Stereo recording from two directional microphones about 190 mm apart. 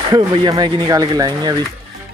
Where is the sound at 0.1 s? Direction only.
25° right (ahead or behind).